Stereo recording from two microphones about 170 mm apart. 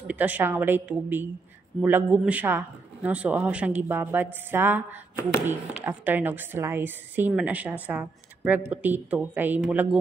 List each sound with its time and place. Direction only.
0.0 s a woman's voice: 10° right (ahead or behind)